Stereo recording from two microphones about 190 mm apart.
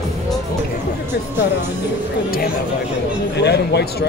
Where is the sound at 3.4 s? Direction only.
60° left (ahead or behind).